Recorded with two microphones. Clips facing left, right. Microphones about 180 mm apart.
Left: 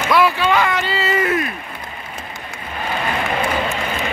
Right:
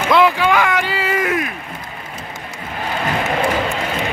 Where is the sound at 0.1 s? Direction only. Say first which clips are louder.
Right 2 dB; 15° right (ahead or behind).